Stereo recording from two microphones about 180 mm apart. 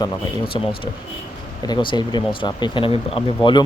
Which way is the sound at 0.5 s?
25° left (ahead or behind).